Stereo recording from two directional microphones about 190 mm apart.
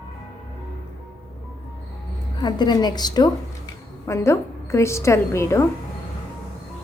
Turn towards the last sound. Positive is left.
turn(degrees=15)  # may be behind; listen again after turning